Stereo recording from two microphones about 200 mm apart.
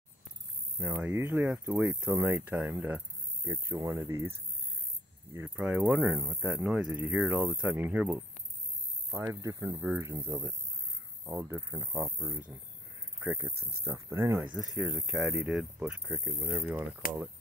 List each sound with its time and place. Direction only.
0.7 s speech: 10° right (ahead or behind)